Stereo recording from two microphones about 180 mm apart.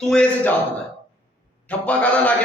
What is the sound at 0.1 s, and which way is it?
Speech, 5° left (ahead or behind).